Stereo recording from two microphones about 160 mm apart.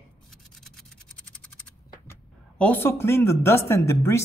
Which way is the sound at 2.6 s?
10° left (ahead or behind).